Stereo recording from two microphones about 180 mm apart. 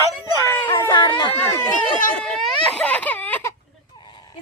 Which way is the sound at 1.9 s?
45° left (ahead or behind).